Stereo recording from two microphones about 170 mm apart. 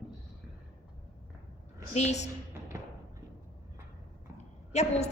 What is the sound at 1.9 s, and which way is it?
Speech, 40° left (ahead or behind).